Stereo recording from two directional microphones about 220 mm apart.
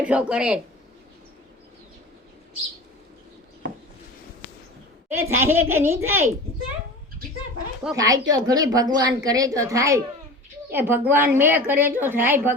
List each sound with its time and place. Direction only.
0.0 s speech: 5° right (ahead or behind)
5.0 s a woman's voice: 10° right (ahead or behind)
7.9 s a woman's voice: 15° right (ahead or behind)